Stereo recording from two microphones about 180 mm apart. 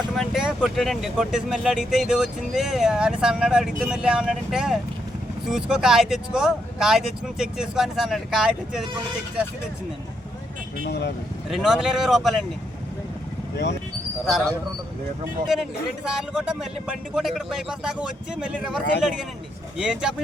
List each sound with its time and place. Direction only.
0.2 s speech: 5° right (ahead or behind)
10.8 s speech: 70° left (ahead or behind)
11.4 s speech: centre (ahead or behind)
15.5 s speech: centre (ahead or behind)